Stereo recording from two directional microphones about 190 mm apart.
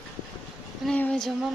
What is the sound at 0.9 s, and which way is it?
Speech, 5° left (ahead or behind).